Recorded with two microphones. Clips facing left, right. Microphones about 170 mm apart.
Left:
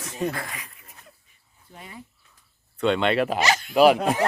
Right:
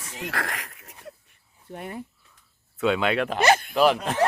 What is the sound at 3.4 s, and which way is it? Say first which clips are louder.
Speech: right 4 dB; 55° right (ahead or behind).